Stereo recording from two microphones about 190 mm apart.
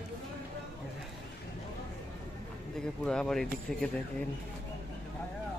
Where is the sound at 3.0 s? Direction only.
5° left (ahead or behind).